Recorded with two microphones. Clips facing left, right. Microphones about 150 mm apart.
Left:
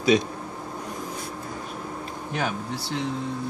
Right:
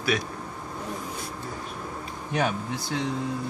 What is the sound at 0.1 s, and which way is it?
Speech, 20° left (ahead or behind).